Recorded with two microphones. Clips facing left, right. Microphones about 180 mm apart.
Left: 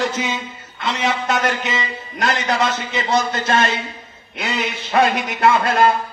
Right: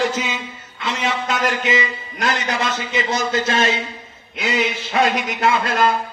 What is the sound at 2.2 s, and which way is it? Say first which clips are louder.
Speech: left 3 dB; 65° left (ahead or behind).